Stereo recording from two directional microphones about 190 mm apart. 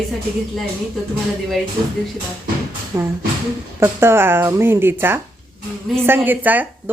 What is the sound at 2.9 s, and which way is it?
A woman's voice, 15° right (ahead or behind).